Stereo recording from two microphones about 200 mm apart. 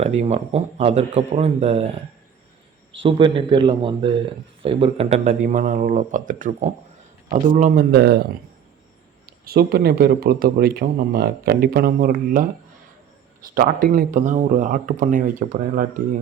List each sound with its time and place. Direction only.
0.0 s speech: 35° right (ahead or behind)
3.0 s speech: 25° right (ahead or behind); by 8.3 s 55° right (ahead or behind)
9.4 s speech: 50° right (ahead or behind)
13.5 s speech: 50° right (ahead or behind)